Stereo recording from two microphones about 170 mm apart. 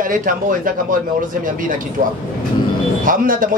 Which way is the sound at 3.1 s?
55° right (ahead or behind).